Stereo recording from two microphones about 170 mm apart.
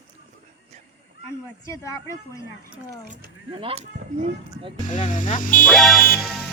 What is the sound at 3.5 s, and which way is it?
Speech, 30° right (ahead or behind).